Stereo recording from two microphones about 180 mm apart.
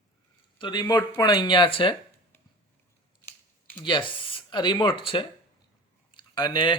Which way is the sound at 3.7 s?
25° left (ahead or behind).